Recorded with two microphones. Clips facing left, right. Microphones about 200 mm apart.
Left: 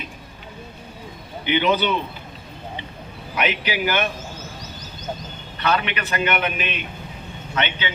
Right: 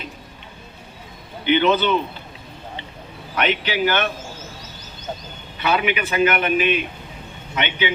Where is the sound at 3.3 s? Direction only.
10° left (ahead or behind).